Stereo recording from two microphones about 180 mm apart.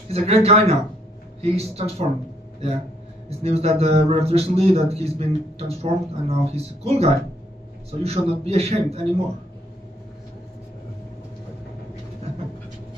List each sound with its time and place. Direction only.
0.1 s speech: 35° right (ahead or behind)
3.3 s speech: 35° right (ahead or behind)
12.2 s vehicle: 35° right (ahead or behind)